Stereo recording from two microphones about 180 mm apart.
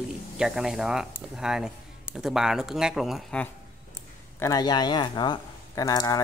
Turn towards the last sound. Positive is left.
turn(degrees=20)  # may be behind; listen again after turning